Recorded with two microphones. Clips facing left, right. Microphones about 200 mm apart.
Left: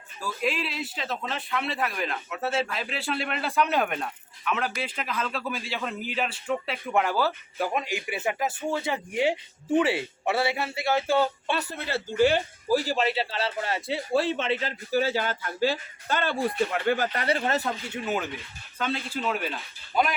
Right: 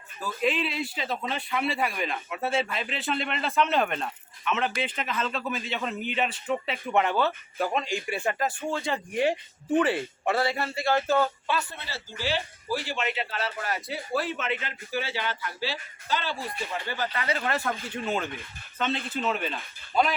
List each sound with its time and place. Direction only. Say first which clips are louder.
0.3 s a man's voice: right 2 dB; 5° left (ahead or behind)
11.5 s speech: even; 40° left (ahead or behind)
11.9 s speech: left 12 dB; 55° left (ahead or behind)
17.4 s speech: left 2 dB; 20° left (ahead or behind)
17.9 s a man's voice: even; 5° left (ahead or behind)